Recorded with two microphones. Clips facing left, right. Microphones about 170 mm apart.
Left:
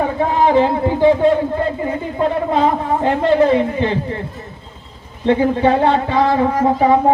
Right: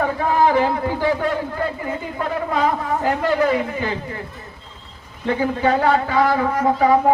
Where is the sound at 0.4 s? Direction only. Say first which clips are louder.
Left 5 dB; 20° left (ahead or behind).